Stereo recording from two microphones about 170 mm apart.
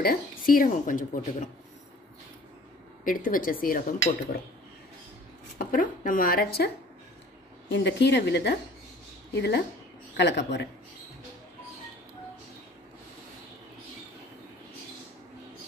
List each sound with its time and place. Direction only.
0.0 s a woman's voice: 55° left (ahead or behind)
3.0 s a woman's voice: 55° left (ahead or behind)
5.6 s a woman's voice: 55° left (ahead or behind)
7.7 s a woman's voice: 90° left
10.1 s a woman's voice: 90° left